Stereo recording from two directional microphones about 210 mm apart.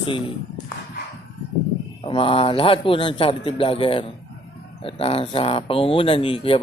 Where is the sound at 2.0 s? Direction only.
25° left (ahead or behind).